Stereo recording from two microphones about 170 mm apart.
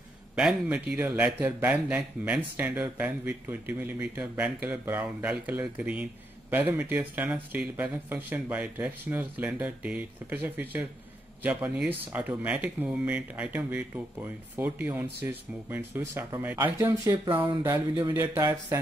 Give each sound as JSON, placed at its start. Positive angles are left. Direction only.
{"t": 0.4, "sound": "speech", "side_deg": -5}
{"t": 17.3, "sound": "speech", "side_deg": -30}
{"t": 17.9, "sound": "speech", "side_deg": -20}